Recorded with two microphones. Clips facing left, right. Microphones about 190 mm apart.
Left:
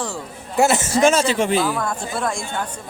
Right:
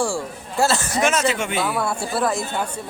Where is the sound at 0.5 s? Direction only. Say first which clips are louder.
Left 3 dB; 20° left (ahead or behind).